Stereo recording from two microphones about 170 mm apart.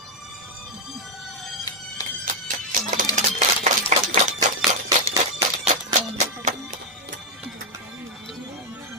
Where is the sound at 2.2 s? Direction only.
50° right (ahead or behind).